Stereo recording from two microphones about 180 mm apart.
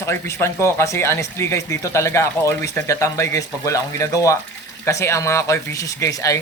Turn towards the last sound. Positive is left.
turn(degrees=20)  # may be behind; listen again after turning